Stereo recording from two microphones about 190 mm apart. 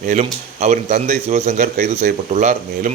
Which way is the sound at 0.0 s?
40° right (ahead or behind).